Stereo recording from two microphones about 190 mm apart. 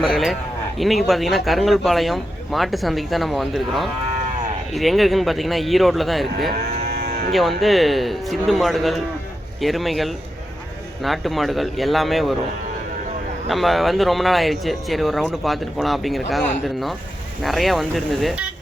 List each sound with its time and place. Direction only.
0.0 s speech: centre (ahead or behind)
7.1 s livestock: 50° right (ahead or behind)
7.3 s speech: centre (ahead or behind)
13.5 s speech: centre (ahead or behind)